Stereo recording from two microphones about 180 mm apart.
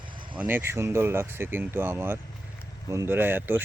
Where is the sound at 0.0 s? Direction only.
25° right (ahead or behind).